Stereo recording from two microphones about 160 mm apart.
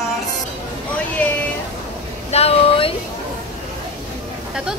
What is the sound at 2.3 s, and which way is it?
Speech, 35° left (ahead or behind).